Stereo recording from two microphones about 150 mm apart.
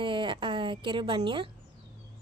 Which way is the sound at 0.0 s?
35° right (ahead or behind).